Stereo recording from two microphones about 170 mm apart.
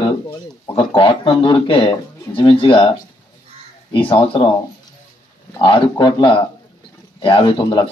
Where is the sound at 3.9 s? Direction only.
30° left (ahead or behind).